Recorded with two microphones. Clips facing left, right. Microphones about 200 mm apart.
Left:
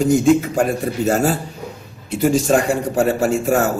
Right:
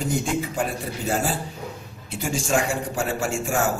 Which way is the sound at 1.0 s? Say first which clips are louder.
Left 7 dB; 45° left (ahead or behind).